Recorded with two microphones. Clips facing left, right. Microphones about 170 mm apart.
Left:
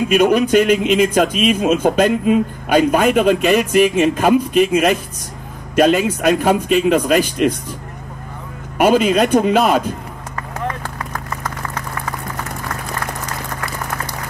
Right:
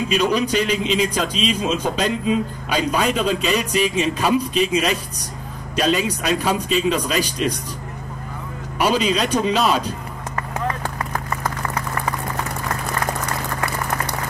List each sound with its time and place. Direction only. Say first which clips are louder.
0.1 s a man's voice: left 7 dB; 55° left (ahead or behind)
8.7 s a man's voice: left 6 dB; 50° left (ahead or behind)